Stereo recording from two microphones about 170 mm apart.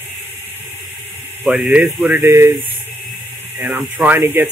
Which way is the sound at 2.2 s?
15° right (ahead or behind).